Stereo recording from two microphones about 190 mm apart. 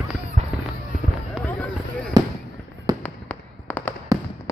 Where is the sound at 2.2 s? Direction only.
20° right (ahead or behind).